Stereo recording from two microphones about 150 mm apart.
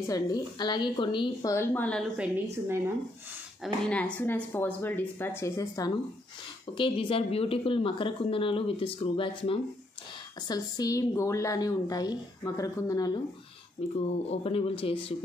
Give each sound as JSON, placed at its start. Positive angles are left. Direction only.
{"t": 0.0, "sound": "a woman's voice", "side_deg": 25}
{"t": 1.5, "sound": "speech", "side_deg": 15}
{"t": 2.4, "sound": "speech", "side_deg": -15}
{"t": 3.6, "sound": "speech", "side_deg": 5}
{"t": 6.8, "sound": "speech", "side_deg": 35}
{"t": 10.5, "sound": "a woman's voice", "side_deg": 25}
{"t": 13.9, "sound": "speech", "side_deg": 40}